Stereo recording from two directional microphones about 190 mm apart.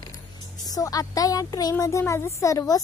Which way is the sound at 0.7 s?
20° left (ahead or behind).